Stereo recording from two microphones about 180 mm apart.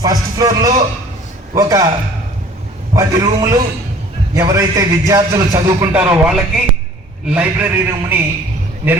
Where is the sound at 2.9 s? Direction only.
20° right (ahead or behind).